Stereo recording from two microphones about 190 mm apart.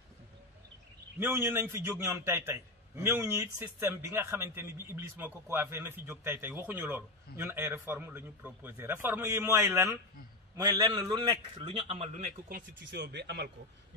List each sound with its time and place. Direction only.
1.2 s a man's voice: 10° right (ahead or behind); by 12.3 s 30° right (ahead or behind)
12.4 s speech: 55° right (ahead or behind)